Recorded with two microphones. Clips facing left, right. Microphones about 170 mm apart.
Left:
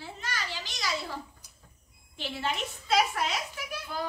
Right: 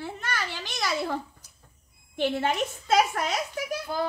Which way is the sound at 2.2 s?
50° right (ahead or behind).